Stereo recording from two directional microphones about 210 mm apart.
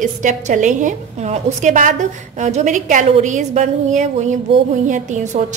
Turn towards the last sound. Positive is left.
turn(degrees=-35)  # may be behind; listen again after turning